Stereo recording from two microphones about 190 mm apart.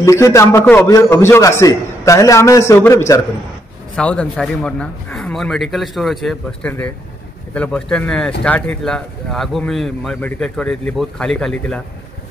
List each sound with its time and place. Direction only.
0.0 s a man's voice: 15° left (ahead or behind)
3.9 s speech: 5° left (ahead or behind)